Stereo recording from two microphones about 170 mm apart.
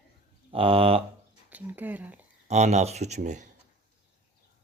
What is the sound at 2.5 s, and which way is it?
Speech, 40° right (ahead or behind).